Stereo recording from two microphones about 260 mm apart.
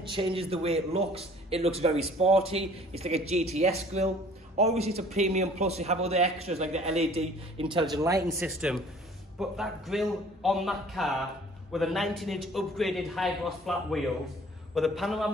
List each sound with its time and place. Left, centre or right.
0.1 s a man's voice: right
8.5 s a man's voice: centre